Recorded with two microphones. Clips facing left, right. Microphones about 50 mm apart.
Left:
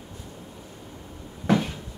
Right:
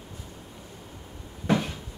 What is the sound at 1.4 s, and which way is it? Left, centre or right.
Cupboard open or close, centre.